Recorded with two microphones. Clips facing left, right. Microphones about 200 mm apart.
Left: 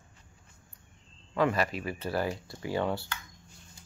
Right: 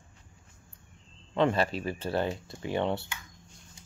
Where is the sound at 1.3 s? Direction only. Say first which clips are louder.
Right 2 dB; 25° right (ahead or behind).